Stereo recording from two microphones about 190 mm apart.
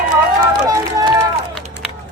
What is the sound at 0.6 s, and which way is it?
Speech, 20° right (ahead or behind).